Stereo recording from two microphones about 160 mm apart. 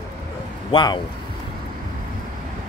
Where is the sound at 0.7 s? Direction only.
30° left (ahead or behind).